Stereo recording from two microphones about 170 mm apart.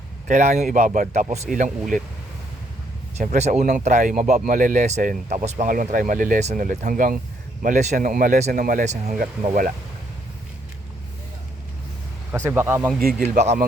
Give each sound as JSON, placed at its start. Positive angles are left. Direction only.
{"t": 0.3, "sound": "speech", "side_deg": -45}
{"t": 3.2, "sound": "speech", "side_deg": -40}
{"t": 12.3, "sound": "speech", "side_deg": -15}
{"t": 13.0, "sound": "speech", "side_deg": -65}
{"t": 13.3, "sound": "speech", "side_deg": -45}